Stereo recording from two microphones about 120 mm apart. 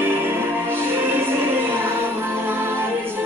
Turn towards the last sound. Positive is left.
turn(degrees=-20)  # may be behind; listen again after turning